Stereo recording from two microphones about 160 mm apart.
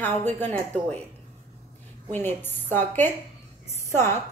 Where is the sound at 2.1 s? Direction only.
15° left (ahead or behind).